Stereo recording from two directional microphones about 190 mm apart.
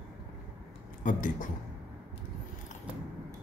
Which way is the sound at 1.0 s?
45° left (ahead or behind).